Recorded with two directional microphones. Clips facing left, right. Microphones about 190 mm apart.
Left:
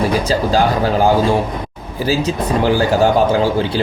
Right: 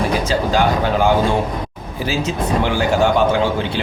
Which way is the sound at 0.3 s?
35° left (ahead or behind).